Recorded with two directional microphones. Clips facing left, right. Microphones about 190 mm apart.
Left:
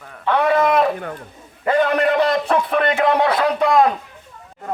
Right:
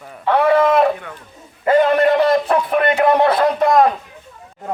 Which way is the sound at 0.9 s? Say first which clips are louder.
Left 5 dB; 45° left (ahead or behind).